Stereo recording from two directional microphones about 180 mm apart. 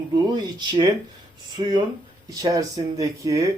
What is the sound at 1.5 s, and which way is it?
Speech, 25° right (ahead or behind).